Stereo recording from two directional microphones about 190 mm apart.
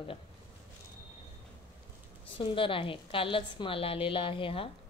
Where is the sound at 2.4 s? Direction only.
25° left (ahead or behind).